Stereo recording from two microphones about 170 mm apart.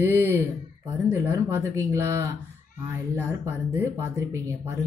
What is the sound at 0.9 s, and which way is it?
Speech, 15° right (ahead or behind).